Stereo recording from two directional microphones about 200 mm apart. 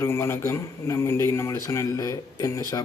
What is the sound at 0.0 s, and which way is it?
Speech, 15° left (ahead or behind).